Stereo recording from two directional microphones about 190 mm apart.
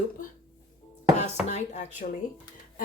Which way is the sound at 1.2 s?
35° left (ahead or behind).